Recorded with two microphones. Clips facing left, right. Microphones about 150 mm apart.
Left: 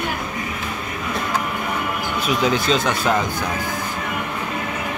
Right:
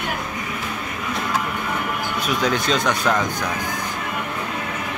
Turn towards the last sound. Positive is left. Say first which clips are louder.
# left 1 dB
turn(degrees=5)  # may be behind; listen again after turning